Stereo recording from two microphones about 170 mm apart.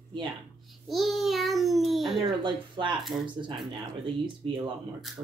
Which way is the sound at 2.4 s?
30° right (ahead or behind).